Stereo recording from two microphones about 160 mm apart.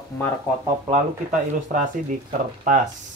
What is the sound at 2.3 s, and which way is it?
Speech, 50° right (ahead or behind).